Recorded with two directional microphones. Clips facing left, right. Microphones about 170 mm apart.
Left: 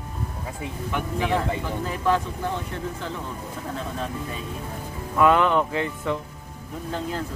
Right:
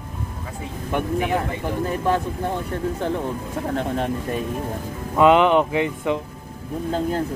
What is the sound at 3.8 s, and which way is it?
Speech, 65° right (ahead or behind).